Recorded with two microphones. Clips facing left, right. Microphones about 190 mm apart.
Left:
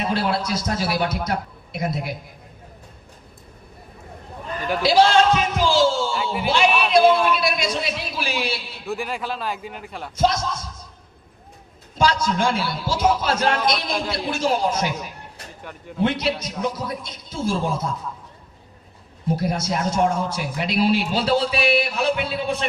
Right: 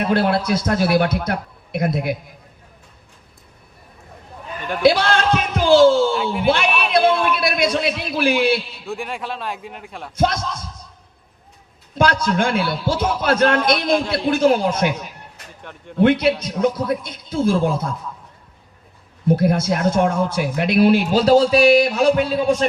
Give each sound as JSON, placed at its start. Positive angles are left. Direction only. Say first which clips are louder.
{"t": 0.0, "sound": "a man's voice", "louder": "right 5 dB", "side_deg": -55}
{"t": 4.8, "sound": "a sound", "louder": "even", "side_deg": -55}
{"t": 7.0, "sound": "a sound", "louder": "left 1 dB", "side_deg": 0}
{"t": 7.3, "sound": "a sound", "louder": "right 4 dB", "side_deg": -60}
{"t": 8.9, "sound": "a man's voice", "louder": "left 1 dB", "side_deg": 0}
{"t": 10.2, "sound": "a man's voice", "louder": "right 1 dB", "side_deg": -55}
{"t": 11.9, "sound": "a man's voice", "louder": "right 3 dB", "side_deg": -55}
{"t": 16.0, "sound": "a man's voice", "louder": "right 7 dB", "side_deg": -55}
{"t": 19.3, "sound": "a man's voice", "louder": "right 6 dB", "side_deg": -55}
{"t": 21.1, "sound": "a man's voice", "louder": "right 7 dB", "side_deg": -40}